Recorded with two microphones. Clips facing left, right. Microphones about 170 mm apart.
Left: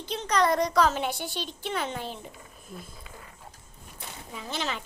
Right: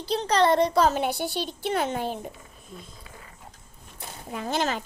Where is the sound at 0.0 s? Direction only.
35° right (ahead or behind).